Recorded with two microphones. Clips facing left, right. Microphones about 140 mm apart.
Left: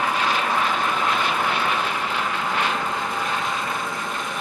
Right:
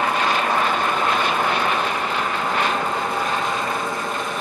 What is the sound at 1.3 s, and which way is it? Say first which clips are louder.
Vehicle: right 2 dB; 50° right (ahead or behind).